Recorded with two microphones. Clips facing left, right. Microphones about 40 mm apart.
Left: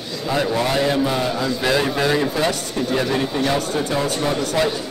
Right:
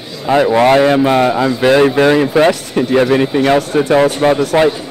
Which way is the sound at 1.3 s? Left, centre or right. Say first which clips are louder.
Right 9 dB; right.